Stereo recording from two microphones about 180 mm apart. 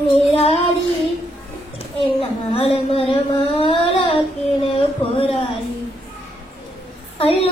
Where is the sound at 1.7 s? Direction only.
30° left (ahead or behind).